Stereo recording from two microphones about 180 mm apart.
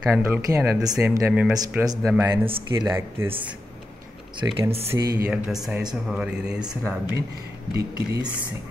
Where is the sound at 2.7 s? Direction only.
15° right (ahead or behind).